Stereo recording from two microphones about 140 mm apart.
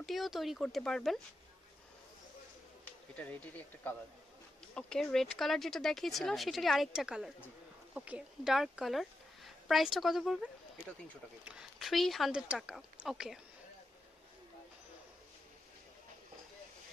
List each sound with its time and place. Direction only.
0.0 s speech: centre (ahead or behind)
3.2 s speech: 10° left (ahead or behind)